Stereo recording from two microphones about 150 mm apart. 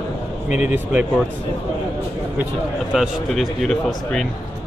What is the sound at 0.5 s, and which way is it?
Speech, 10° right (ahead or behind).